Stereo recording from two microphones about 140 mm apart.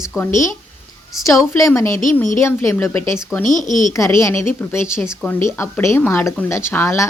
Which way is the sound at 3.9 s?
20° left (ahead or behind).